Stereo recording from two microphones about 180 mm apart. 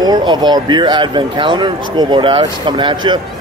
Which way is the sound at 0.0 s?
25° right (ahead or behind).